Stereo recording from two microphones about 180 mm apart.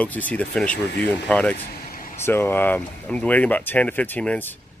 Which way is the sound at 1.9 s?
50° left (ahead or behind).